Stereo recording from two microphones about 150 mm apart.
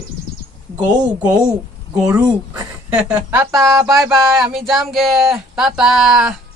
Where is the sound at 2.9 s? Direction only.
10° right (ahead or behind).